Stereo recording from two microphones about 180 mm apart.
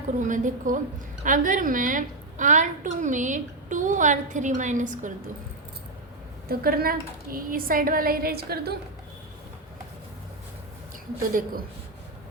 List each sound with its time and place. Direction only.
0.3 s a woman's voice: 45° right (ahead or behind)
6.5 s a woman's voice: 55° right (ahead or behind)
11.2 s a woman's voice: 50° right (ahead or behind)